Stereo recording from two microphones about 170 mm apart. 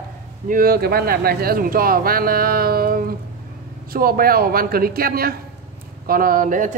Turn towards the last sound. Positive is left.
turn(degrees=-50)  # may be behind; listen again after turning